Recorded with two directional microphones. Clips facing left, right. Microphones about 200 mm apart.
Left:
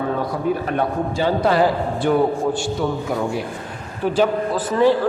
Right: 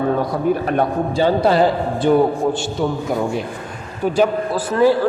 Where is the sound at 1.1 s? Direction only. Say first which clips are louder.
Right 3 dB; 30° right (ahead or behind).